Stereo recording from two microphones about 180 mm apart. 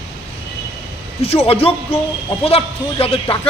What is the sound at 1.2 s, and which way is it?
A man's voice, 35° left (ahead or behind).